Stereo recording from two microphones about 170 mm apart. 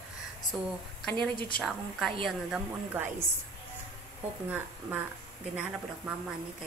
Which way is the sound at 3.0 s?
10° right (ahead or behind).